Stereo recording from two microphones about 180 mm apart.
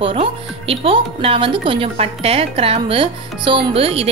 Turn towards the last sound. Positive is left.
turn(degrees=-30)  # may be behind; listen again after turning